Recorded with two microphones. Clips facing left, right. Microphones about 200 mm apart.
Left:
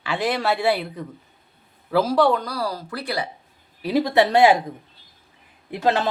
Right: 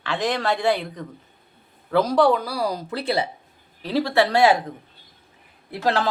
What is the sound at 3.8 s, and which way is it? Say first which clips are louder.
Speech: left 2 dB; 15° left (ahead or behind).